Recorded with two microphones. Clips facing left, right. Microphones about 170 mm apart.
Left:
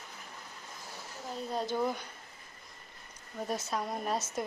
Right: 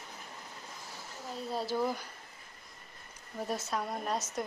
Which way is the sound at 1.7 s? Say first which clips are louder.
Right 1 dB; 5° right (ahead or behind).